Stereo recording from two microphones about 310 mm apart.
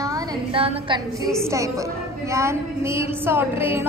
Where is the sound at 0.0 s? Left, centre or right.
Centre.